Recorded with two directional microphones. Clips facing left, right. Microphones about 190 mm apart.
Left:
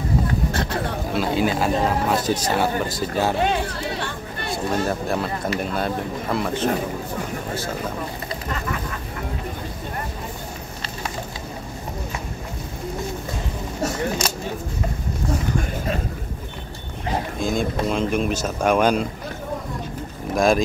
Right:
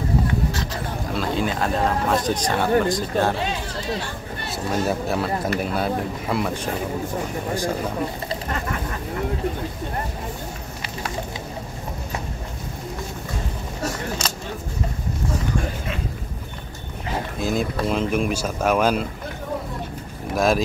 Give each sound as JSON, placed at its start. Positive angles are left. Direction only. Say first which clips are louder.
{"t": 0.5, "sound": "a sound", "louder": "left 3 dB", "side_deg": 55}
{"t": 1.1, "sound": "speech", "louder": "left 3 dB", "side_deg": 5}
{"t": 3.3, "sound": "speech", "louder": "left 5 dB", "side_deg": 55}
{"t": 4.5, "sound": "speech", "louder": "even", "side_deg": -5}
{"t": 17.4, "sound": "speech", "louder": "right 1 dB", "side_deg": -5}
{"t": 20.3, "sound": "speech", "louder": "left 2 dB", "side_deg": -5}